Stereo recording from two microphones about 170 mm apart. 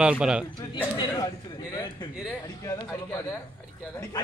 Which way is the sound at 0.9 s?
25° left (ahead or behind).